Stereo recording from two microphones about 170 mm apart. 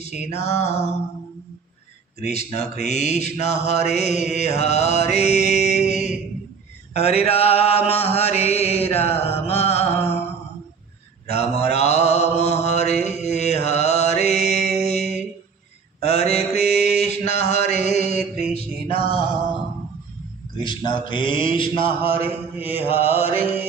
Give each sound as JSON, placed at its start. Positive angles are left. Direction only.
{"t": 0.0, "sound": "a sound", "side_deg": 40}
{"t": 0.3, "sound": "chant", "side_deg": 40}
{"t": 2.1, "sound": "speech", "side_deg": 40}
{"t": 2.5, "sound": "chant", "side_deg": 40}
{"t": 7.3, "sound": "chant", "side_deg": 35}
{"t": 11.3, "sound": "mantra", "side_deg": 40}
{"t": 14.8, "sound": "a sound", "side_deg": 40}
{"t": 16.0, "sound": "mantra", "side_deg": 40}
{"t": 20.6, "sound": "mantra", "side_deg": 30}
{"t": 22.3, "sound": "mantra", "side_deg": -10}